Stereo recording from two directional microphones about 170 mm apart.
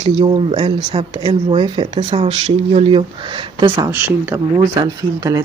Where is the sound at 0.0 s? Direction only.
30° right (ahead or behind).